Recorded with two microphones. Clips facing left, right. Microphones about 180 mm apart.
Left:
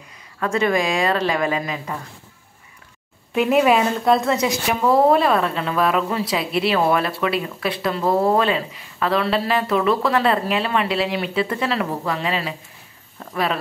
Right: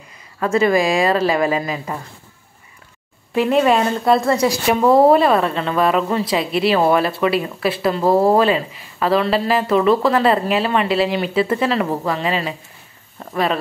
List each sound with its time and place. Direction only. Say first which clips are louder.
0.4 s speech: right 4 dB; 5° right (ahead or behind)
3.3 s speech: right 1 dB; 5° left (ahead or behind)
8.0 s speech: right 4 dB; 30° right (ahead or behind)
8.4 s speech: right 4 dB; centre (ahead or behind)